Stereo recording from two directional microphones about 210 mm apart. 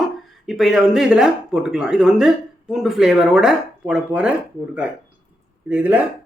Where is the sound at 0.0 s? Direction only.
Centre (ahead or behind).